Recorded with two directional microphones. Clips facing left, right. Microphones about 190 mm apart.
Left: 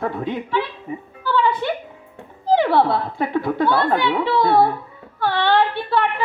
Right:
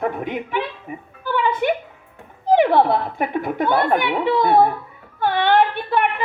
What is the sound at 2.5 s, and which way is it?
A woman's voice, 20° right (ahead or behind).